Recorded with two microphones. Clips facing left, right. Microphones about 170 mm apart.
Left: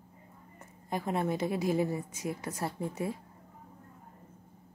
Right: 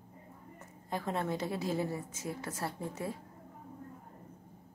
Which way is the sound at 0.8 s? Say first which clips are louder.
Left 3 dB; 15° left (ahead or behind).